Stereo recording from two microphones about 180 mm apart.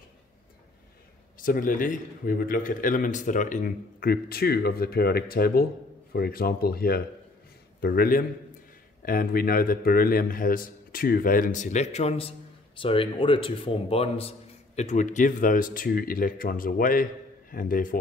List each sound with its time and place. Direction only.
1.4 s a man's voice: 50° left (ahead or behind)